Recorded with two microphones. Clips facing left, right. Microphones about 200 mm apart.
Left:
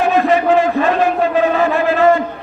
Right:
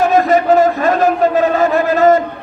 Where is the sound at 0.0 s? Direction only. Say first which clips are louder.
Right 2 dB; 40° right (ahead or behind).